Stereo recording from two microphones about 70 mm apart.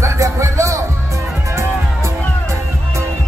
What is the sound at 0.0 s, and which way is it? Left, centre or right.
Music, right.